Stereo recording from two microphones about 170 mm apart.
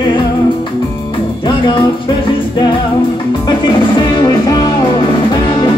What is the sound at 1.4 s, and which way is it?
Music, 25° left (ahead or behind).